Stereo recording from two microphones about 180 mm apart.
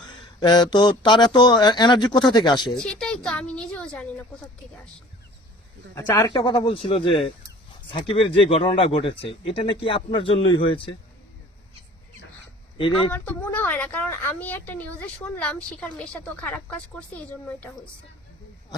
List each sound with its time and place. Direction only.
0.3 s speech: 25° left (ahead or behind)
2.7 s a sound: 5° left (ahead or behind)
5.9 s speech: 20° left (ahead or behind)
12.7 s speech: 25° left (ahead or behind)
13.1 s a woman's voice: 10° left (ahead or behind)